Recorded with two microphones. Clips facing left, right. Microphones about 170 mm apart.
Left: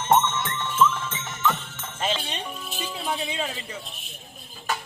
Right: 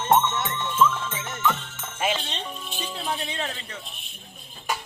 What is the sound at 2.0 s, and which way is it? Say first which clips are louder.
Music: right 1 dB; 10° right (ahead or behind).